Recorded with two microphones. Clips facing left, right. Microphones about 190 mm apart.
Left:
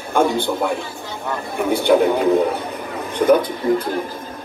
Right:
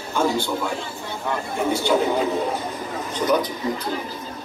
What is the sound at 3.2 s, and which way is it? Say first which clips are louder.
Speech: left 7 dB; 55° left (ahead or behind).